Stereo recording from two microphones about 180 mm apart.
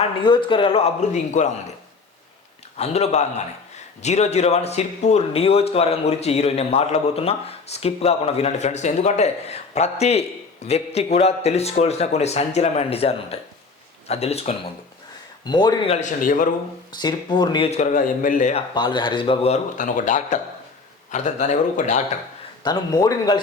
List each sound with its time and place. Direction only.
0.2 s speech: 25° left (ahead or behind)
2.7 s speech: 35° left (ahead or behind)
15.4 s a man's voice: 25° left (ahead or behind)
15.9 s speech: 40° left (ahead or behind)
17.0 s a man's voice: 25° left (ahead or behind)
17.7 s speech: 45° left (ahead or behind)
18.7 s speech: 25° left (ahead or behind); by 22.0 s 40° left (ahead or behind)
22.6 s a man's voice: 20° left (ahead or behind)